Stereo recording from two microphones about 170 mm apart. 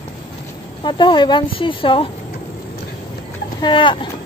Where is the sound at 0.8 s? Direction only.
30° left (ahead or behind).